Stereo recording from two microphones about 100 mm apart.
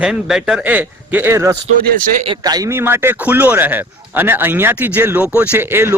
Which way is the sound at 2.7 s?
25° right (ahead or behind).